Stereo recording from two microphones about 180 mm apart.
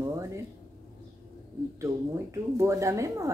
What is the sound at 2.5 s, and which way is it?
Speech, 15° right (ahead or behind).